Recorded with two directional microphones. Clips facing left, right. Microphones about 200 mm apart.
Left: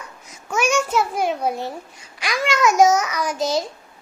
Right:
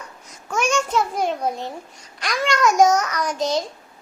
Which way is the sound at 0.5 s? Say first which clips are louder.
Left 1 dB; 5° left (ahead or behind).